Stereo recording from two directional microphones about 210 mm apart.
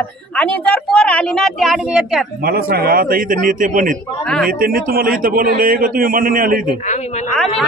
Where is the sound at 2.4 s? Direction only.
45° right (ahead or behind).